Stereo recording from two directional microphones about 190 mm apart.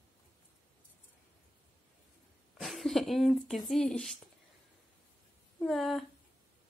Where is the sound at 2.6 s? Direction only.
Centre (ahead or behind).